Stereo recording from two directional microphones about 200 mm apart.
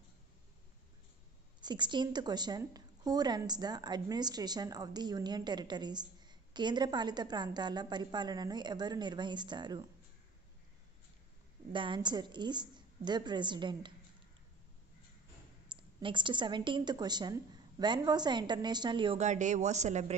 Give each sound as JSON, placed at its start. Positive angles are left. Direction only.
{"t": 1.6, "sound": "a woman's voice", "side_deg": -20}
{"t": 11.7, "sound": "a woman's voice", "side_deg": -25}
{"t": 15.7, "sound": "a woman's voice", "side_deg": -25}